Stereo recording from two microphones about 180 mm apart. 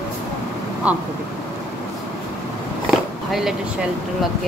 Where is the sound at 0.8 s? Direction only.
5° right (ahead or behind).